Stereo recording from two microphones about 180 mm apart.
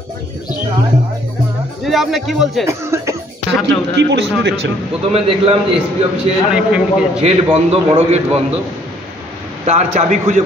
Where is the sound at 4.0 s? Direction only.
70° right (ahead or behind).